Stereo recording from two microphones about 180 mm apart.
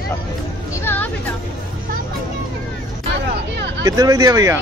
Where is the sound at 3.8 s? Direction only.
20° right (ahead or behind).